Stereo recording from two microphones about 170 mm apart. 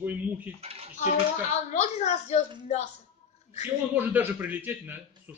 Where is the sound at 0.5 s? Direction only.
35° right (ahead or behind).